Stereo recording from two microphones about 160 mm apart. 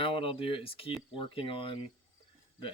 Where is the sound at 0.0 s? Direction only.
35° left (ahead or behind).